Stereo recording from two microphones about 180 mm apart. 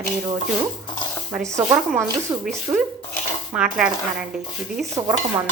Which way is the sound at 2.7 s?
15° right (ahead or behind).